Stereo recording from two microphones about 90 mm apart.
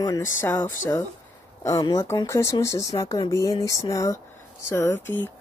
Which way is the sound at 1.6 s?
45° left (ahead or behind).